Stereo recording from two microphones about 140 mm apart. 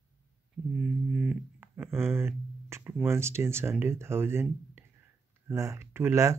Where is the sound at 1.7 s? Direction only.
15° right (ahead or behind).